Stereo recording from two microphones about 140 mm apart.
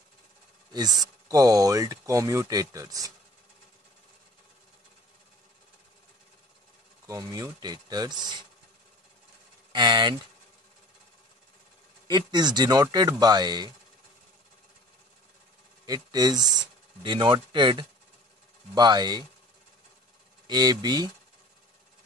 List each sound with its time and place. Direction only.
0.7 s speech: 30° right (ahead or behind)
7.1 s speech: 25° right (ahead or behind)
9.7 s speech: 30° right (ahead or behind)
12.1 s speech: 30° right (ahead or behind)
15.8 s speech: 30° right (ahead or behind)
20.4 s speech: 30° right (ahead or behind)